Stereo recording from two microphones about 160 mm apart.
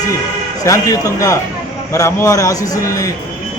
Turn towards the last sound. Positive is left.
turn(degrees=20)  # may be behind; listen again after turning